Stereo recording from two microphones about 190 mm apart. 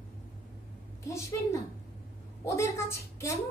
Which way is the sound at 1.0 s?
15° left (ahead or behind).